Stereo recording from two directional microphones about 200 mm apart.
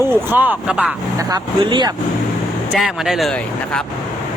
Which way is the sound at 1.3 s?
20° right (ahead or behind).